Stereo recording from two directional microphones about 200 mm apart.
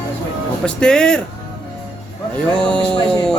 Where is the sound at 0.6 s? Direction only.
5° left (ahead or behind).